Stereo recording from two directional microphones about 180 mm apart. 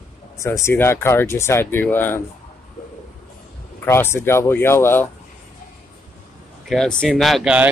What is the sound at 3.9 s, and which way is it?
Speech, 15° left (ahead or behind).